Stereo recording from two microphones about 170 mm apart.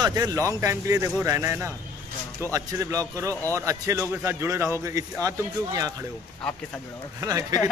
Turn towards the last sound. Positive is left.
turn(degrees=-20)  # may be behind; listen again after turning